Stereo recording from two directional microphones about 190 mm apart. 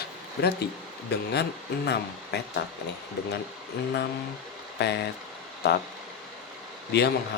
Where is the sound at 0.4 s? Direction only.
60° left (ahead or behind).